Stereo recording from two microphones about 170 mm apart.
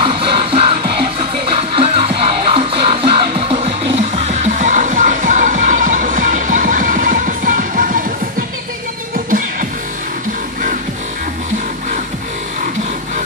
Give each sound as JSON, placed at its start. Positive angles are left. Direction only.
{"t": 0.0, "sound": "music", "side_deg": -30}